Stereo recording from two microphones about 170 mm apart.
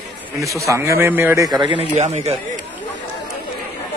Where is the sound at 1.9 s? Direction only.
40° right (ahead or behind).